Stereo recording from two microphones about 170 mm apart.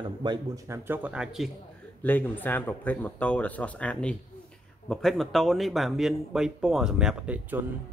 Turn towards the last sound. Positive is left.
turn(degrees=-10)  # may be behind; listen again after turning